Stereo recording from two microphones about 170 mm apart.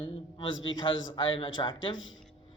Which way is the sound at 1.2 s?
30° left (ahead or behind).